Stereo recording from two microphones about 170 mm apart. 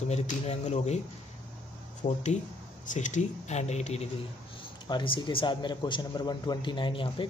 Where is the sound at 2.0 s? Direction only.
35° left (ahead or behind).